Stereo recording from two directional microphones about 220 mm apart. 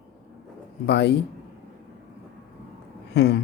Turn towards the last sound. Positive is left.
turn(degrees=50)  # may be behind; listen again after turning